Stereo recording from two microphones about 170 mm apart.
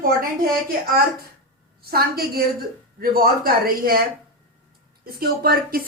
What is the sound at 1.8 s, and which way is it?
A woman's voice, 65° right (ahead or behind).